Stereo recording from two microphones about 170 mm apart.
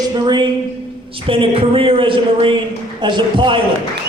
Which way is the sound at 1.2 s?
30° right (ahead or behind).